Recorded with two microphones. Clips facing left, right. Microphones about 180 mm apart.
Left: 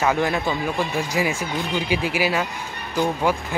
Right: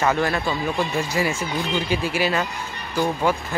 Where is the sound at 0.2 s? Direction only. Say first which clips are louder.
Even; 15° left (ahead or behind).